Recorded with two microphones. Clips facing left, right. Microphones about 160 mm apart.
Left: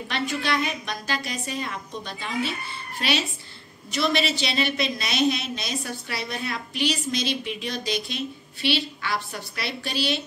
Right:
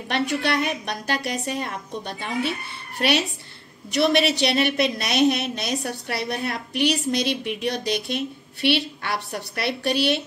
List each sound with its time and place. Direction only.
0.1 s a woman's voice: 65° right (ahead or behind)